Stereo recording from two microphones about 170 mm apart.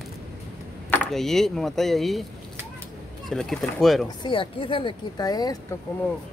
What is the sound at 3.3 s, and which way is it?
Speech, 5° left (ahead or behind).